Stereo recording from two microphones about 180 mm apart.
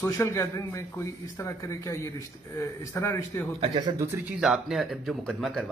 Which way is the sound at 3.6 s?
30° right (ahead or behind).